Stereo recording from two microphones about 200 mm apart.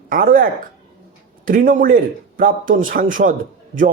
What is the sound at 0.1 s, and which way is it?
Speech, 45° right (ahead or behind).